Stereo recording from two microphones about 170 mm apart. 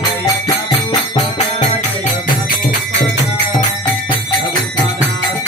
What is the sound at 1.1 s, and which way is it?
Music, 45° left (ahead or behind).